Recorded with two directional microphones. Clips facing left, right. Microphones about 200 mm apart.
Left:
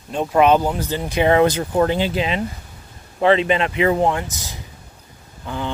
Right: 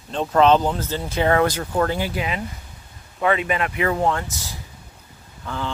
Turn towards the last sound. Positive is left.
turn(degrees=15)  # may be behind; listen again after turning